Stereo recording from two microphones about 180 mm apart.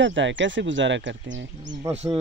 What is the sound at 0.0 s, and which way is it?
Speech, 90° right.